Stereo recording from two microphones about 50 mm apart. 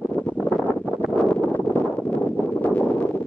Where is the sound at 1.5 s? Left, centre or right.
Left.